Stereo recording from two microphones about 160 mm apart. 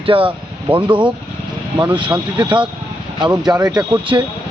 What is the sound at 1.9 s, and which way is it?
Speech, 25° right (ahead or behind).